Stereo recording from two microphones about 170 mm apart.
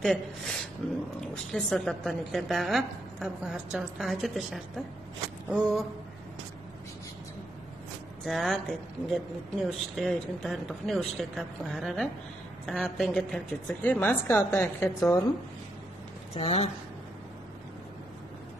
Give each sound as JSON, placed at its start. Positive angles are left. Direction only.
{"t": 0.0, "sound": "a woman's voice", "side_deg": 5}
{"t": 8.3, "sound": "a woman's voice", "side_deg": 0}
{"t": 16.3, "sound": "speech", "side_deg": 40}